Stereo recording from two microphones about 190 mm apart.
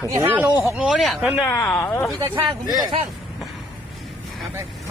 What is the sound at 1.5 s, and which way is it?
Speech, 10° left (ahead or behind).